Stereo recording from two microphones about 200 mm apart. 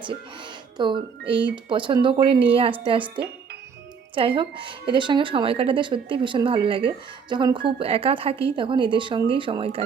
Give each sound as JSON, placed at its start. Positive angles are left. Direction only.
{"t": 0.8, "sound": "speech", "side_deg": -25}
{"t": 4.4, "sound": "speech", "side_deg": -25}